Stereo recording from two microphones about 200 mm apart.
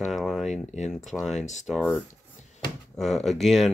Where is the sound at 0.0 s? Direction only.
Centre (ahead or behind).